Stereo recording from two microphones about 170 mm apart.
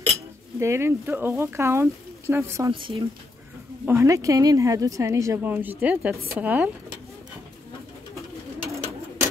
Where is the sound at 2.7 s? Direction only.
30° right (ahead or behind).